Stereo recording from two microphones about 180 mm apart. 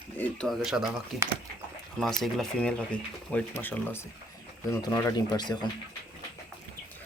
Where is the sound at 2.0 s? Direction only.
Centre (ahead or behind); by 5.5 s 25° left (ahead or behind).